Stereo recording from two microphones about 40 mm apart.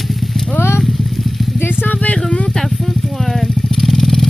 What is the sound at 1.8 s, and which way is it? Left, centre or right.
Vehicle, left.